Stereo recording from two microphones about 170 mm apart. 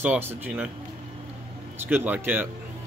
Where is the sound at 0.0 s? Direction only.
10° right (ahead or behind).